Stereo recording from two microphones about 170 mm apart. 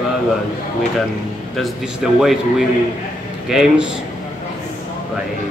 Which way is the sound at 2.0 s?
5° right (ahead or behind).